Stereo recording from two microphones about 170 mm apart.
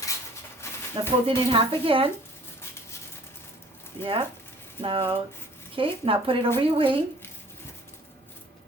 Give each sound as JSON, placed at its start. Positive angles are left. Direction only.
{"t": 0.6, "sound": "a sound", "side_deg": 15}
{"t": 1.5, "sound": "speech", "side_deg": -30}
{"t": 4.0, "sound": "speech", "side_deg": -30}